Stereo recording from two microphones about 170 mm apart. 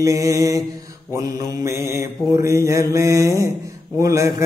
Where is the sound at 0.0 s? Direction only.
20° right (ahead or behind).